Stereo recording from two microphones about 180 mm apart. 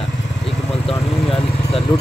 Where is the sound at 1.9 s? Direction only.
25° left (ahead or behind).